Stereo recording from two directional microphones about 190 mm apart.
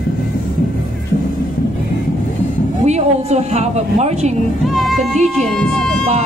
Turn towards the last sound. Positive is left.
turn(degrees=0)  # may be behind; listen again after turning